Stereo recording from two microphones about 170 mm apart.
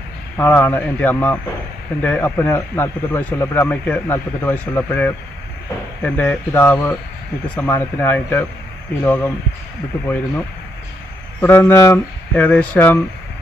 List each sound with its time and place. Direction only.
0.4 s speech: 10° left (ahead or behind)
11.4 s speech: 10° left (ahead or behind)